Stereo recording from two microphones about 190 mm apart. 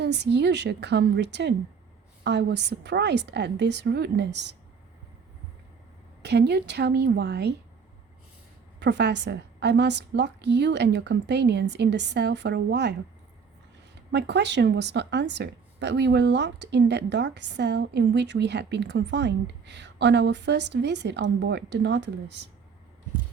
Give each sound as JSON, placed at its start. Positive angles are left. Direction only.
{"t": 0.0, "sound": "a woman's voice", "side_deg": -65}
{"t": 6.2, "sound": "a woman's voice", "side_deg": -60}
{"t": 8.8, "sound": "a woman's voice", "side_deg": -65}
{"t": 14.1, "sound": "a woman's voice", "side_deg": -65}